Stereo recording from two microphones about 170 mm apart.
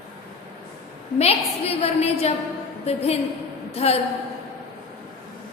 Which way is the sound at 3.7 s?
35° left (ahead or behind).